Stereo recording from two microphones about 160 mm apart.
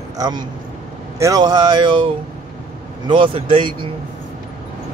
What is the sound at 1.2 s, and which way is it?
Speech, 25° right (ahead or behind).